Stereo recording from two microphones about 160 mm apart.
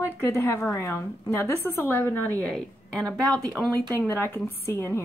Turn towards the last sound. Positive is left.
turn(degrees=15)  # may be behind; listen again after turning